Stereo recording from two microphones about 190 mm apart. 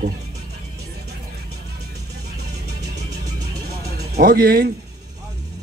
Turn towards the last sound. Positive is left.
turn(degrees=-50)  # may be behind; listen again after turning